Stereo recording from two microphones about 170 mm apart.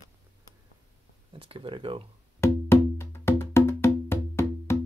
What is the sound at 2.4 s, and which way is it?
Music, 15° left (ahead or behind).